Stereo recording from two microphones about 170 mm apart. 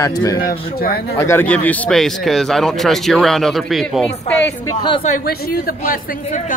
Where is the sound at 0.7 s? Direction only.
65° left (ahead or behind).